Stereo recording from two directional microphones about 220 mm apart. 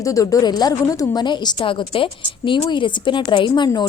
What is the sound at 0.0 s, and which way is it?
A woman's voice, 15° left (ahead or behind).